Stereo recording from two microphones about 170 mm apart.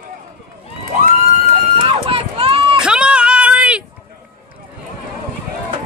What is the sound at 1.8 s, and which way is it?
Run, 35° right (ahead or behind).